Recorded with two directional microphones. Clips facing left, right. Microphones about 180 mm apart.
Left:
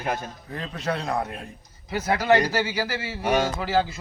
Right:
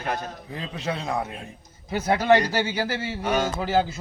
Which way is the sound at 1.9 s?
25° right (ahead or behind).